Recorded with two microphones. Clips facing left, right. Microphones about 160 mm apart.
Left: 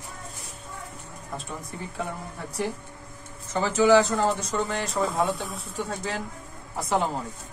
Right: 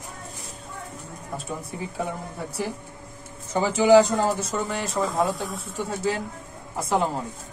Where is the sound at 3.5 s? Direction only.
10° right (ahead or behind).